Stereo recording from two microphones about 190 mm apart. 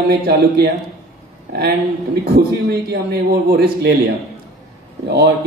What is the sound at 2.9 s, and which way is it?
A man's voice, 55° right (ahead or behind).